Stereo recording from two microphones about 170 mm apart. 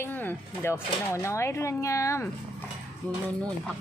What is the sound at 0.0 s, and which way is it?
Speech, 10° left (ahead or behind).